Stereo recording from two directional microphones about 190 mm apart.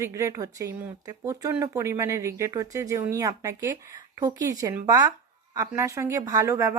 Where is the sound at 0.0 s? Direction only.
15° right (ahead or behind).